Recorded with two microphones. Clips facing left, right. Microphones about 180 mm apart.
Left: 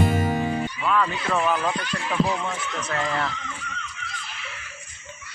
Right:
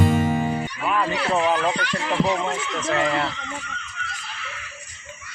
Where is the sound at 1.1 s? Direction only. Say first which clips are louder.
Right 3 dB; 75° right (ahead or behind).